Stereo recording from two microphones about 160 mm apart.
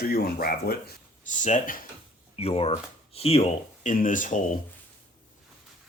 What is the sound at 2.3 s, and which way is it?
Speech, 40° left (ahead or behind).